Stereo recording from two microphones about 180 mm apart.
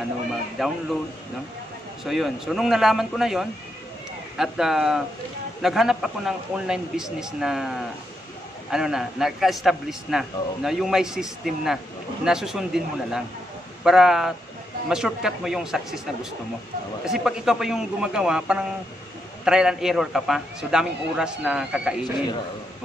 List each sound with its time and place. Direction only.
0.6 s a man's voice: centre (ahead or behind)
2.0 s a man's voice: centre (ahead or behind)